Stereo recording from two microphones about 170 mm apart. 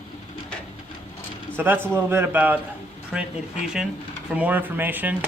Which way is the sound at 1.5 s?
10° right (ahead or behind).